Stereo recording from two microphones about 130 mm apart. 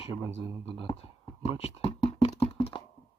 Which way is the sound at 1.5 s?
50° left (ahead or behind).